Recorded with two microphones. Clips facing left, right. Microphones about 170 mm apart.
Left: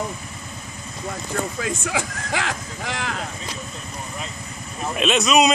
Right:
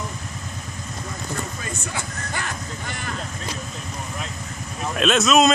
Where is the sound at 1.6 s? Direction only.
90° left.